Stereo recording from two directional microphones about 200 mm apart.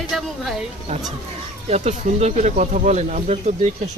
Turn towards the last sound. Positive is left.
turn(degrees=-35)  # may be behind; listen again after turning